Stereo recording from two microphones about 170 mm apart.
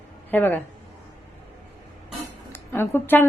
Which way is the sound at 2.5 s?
15° left (ahead or behind).